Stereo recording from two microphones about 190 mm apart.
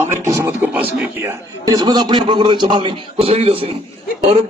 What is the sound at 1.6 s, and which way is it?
A man's voice, 20° right (ahead or behind).